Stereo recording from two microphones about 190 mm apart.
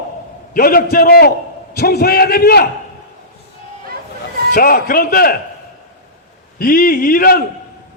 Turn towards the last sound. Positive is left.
turn(degrees=50)  # may be behind; listen again after turning